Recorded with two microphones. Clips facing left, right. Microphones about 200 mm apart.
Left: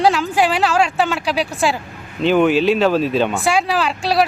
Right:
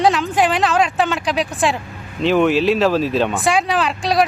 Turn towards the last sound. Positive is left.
turn(degrees=0)  # may be behind; listen again after turning